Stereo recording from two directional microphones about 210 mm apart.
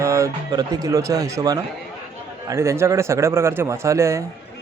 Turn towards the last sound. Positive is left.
turn(degrees=-15)  # may be behind; listen again after turning